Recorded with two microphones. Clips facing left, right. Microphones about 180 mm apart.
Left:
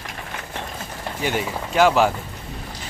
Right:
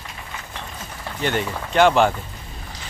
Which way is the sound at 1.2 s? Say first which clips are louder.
Right 1 dB; 5° left (ahead or behind).